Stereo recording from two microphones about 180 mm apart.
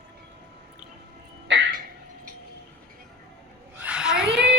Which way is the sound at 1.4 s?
80° right.